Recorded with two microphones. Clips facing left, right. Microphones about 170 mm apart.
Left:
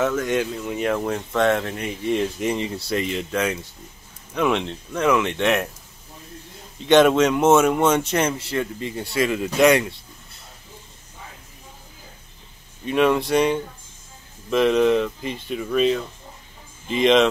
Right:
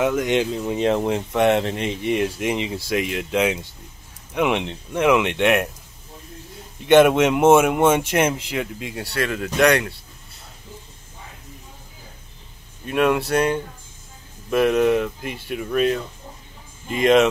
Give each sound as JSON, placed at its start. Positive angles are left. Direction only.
{"t": 0.0, "sound": "speech", "side_deg": -15}
{"t": 2.1, "sound": "speech", "side_deg": -10}
{"t": 6.9, "sound": "speech", "side_deg": -10}
{"t": 12.9, "sound": "speech", "side_deg": -5}